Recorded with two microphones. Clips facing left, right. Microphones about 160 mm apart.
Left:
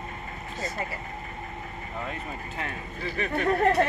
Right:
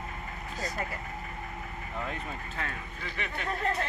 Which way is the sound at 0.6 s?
5° left (ahead or behind).